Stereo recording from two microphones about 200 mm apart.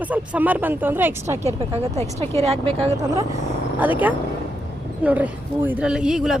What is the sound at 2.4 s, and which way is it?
Speech, 30° right (ahead or behind).